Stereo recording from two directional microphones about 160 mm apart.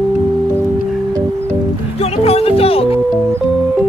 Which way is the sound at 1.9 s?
40° left (ahead or behind).